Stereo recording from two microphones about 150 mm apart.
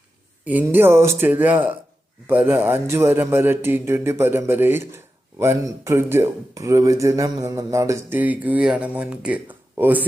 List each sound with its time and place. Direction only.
0.4 s speech: 10° right (ahead or behind)